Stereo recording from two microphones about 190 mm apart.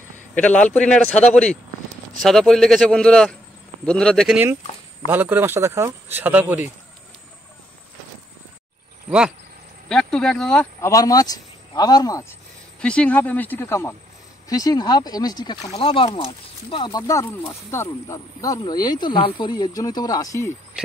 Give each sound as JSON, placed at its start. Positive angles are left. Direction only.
{"t": 0.3, "sound": "a man's voice", "side_deg": 5}
{"t": 5.0, "sound": "speech", "side_deg": -10}
{"t": 9.8, "sound": "speech", "side_deg": 5}
{"t": 12.8, "sound": "speech", "side_deg": 5}